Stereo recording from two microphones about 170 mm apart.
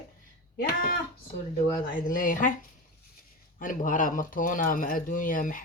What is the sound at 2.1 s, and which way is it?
Speech, 55° left (ahead or behind).